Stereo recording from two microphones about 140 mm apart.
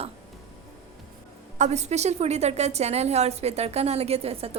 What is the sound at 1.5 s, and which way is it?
A woman's voice, 55° right (ahead or behind).